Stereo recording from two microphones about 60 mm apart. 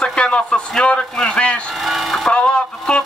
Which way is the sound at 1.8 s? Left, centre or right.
Centre.